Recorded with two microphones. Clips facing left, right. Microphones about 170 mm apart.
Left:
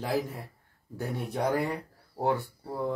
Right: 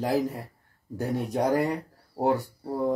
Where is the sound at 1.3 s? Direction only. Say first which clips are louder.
Right 3 dB; 40° right (ahead or behind).